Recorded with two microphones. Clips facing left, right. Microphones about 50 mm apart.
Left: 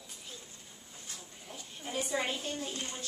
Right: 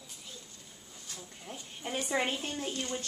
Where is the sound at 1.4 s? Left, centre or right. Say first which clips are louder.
Right 3 dB; right.